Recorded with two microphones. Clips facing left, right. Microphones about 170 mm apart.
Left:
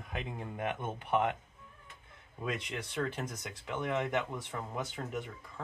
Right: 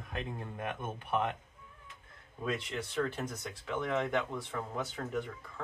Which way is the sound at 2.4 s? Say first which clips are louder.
Right 2 dB; 15° left (ahead or behind).